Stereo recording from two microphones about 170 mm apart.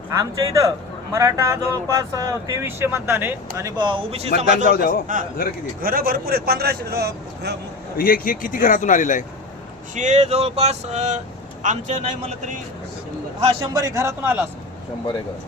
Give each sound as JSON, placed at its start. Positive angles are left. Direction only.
{"t": 0.1, "sound": "a man's voice", "side_deg": -20}
{"t": 4.4, "sound": "a man's voice", "side_deg": -45}
{"t": 4.7, "sound": "a man's voice", "side_deg": 60}
{"t": 5.8, "sound": "a man's voice", "side_deg": -60}
{"t": 7.9, "sound": "a man's voice", "side_deg": 55}
{"t": 9.9, "sound": "a man's voice", "side_deg": -45}
{"t": 13.4, "sound": "a man's voice", "side_deg": -30}